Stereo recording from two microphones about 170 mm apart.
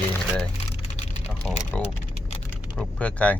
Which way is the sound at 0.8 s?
40° left (ahead or behind).